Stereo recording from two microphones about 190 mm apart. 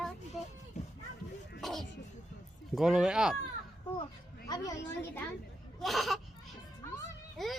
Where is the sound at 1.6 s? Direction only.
Centre (ahead or behind).